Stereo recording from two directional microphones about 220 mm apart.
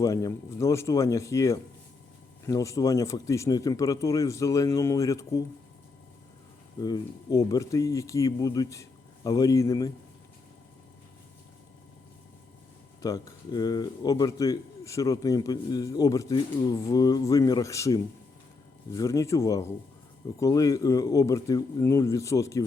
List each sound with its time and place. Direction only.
0.0 s a man's voice: 15° left (ahead or behind)
6.7 s a man's voice: 15° left (ahead or behind)
13.0 s a man's voice: 15° left (ahead or behind)